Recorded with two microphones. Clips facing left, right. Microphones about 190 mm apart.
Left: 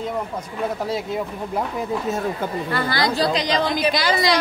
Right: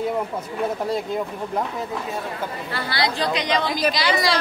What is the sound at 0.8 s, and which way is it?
Speech, 5° left (ahead or behind).